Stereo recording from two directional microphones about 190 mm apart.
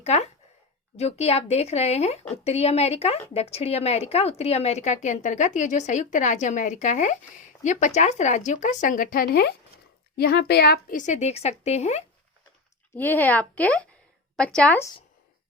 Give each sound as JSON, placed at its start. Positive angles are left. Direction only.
{"t": 0.0, "sound": "speech", "side_deg": 35}
{"t": 13.0, "sound": "a woman's voice", "side_deg": 10}